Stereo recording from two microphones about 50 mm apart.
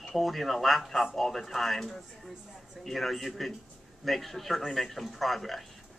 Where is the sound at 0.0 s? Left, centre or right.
Centre.